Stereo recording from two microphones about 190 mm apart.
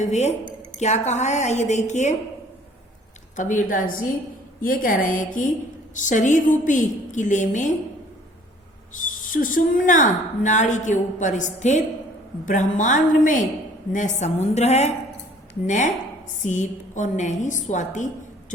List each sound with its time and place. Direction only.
0.0 s a woman's voice: 35° left (ahead or behind)
3.3 s a woman's voice: 45° left (ahead or behind)
9.2 s a woman's voice: 45° left (ahead or behind)